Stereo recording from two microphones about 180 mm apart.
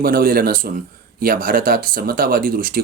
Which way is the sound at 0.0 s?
55° right (ahead or behind).